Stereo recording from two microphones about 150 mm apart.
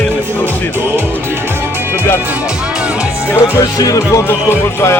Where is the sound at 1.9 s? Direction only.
15° left (ahead or behind).